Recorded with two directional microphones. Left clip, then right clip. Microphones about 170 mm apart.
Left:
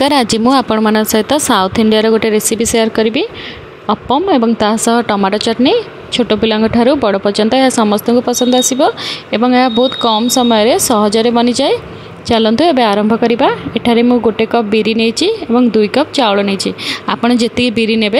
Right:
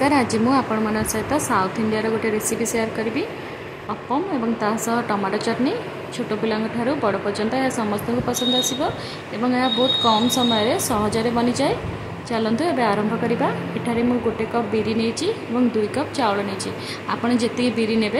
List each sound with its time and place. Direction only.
0.0 s speech: 55° left (ahead or behind)